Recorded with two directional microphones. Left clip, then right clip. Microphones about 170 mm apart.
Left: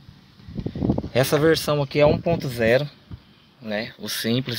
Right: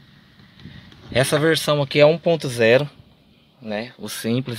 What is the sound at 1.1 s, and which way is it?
Speech, centre (ahead or behind).